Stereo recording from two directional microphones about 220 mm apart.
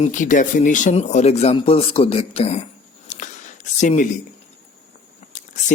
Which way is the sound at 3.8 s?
35° left (ahead or behind).